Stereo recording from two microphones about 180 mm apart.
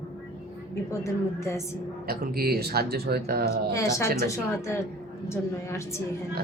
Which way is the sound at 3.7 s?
15° left (ahead or behind).